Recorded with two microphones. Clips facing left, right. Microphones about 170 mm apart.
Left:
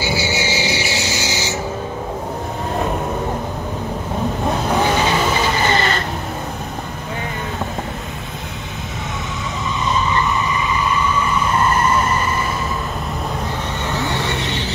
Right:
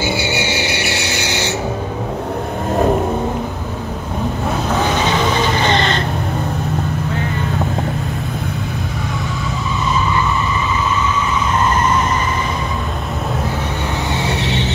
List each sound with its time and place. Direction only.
0.0 s cricket: 60° right (ahead or behind)
5.6 s vehicle: 5° left (ahead or behind)